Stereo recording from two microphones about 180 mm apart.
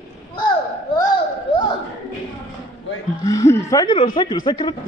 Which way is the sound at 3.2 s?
15° left (ahead or behind).